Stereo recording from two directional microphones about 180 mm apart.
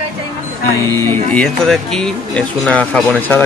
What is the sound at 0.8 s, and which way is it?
Speech, 15° left (ahead or behind).